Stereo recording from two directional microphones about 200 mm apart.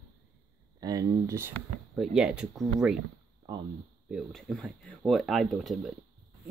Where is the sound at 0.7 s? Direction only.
20° right (ahead or behind).